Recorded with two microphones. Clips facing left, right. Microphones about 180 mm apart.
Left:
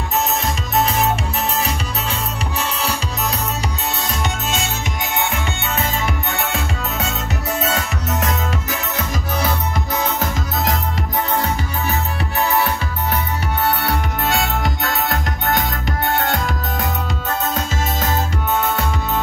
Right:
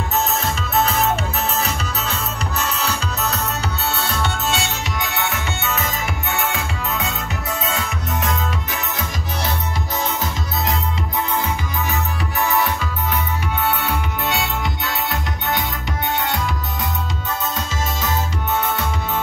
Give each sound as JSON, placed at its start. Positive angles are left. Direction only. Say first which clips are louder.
{"t": 13.8, "sound": "music", "louder": "left 2 dB", "side_deg": 45}